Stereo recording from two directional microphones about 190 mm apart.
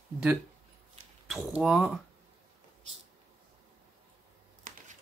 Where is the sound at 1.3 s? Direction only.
5° right (ahead or behind).